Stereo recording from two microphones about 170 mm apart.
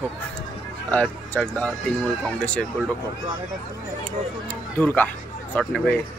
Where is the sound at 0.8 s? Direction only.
10° left (ahead or behind).